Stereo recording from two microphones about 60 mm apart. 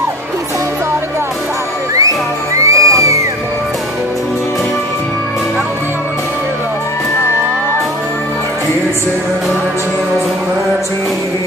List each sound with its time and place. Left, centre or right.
2.0 s music: right